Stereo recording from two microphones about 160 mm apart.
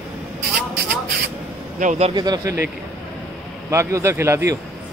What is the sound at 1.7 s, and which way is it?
Speech, 45° right (ahead or behind).